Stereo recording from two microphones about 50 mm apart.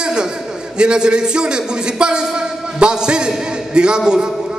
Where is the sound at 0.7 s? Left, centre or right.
Centre.